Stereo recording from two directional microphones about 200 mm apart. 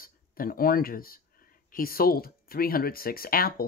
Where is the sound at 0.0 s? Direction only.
45° left (ahead or behind).